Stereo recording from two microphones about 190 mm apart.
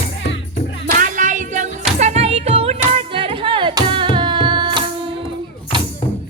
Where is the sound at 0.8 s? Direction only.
40° right (ahead or behind); by 4.8 s 25° right (ahead or behind).